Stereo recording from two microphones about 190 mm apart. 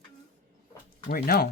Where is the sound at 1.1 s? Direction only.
50° left (ahead or behind).